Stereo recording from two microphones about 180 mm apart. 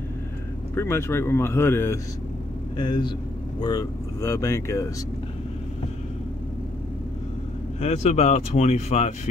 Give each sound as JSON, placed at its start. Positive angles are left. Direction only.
{"t": 0.7, "sound": "speech", "side_deg": 15}
{"t": 2.8, "sound": "speech", "side_deg": 25}
{"t": 7.8, "sound": "speech", "side_deg": 40}